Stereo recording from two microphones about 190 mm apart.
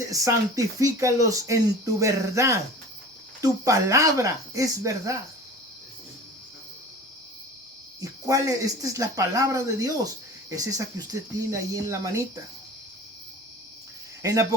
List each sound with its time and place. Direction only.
0.1 s speech: 15° right (ahead or behind)
8.0 s speech: 20° right (ahead or behind)
14.2 s speech: 15° right (ahead or behind)